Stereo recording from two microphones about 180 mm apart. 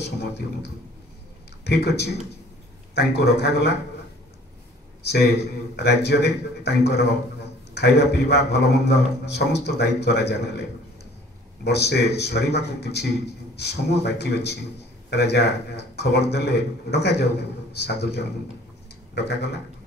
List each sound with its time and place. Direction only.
1.6 s a man's voice: 65° left (ahead or behind)
5.0 s a man's voice: 65° left (ahead or behind)
11.6 s a man's voice: 65° left (ahead or behind)